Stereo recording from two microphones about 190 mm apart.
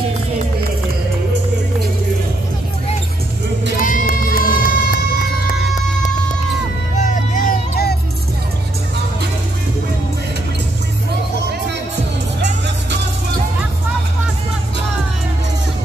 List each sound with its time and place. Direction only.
3.7 s music: 45° left (ahead or behind)
7.1 s music: 45° left (ahead or behind)